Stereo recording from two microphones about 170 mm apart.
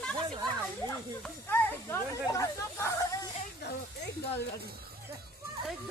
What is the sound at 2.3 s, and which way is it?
Snake, 15° left (ahead or behind).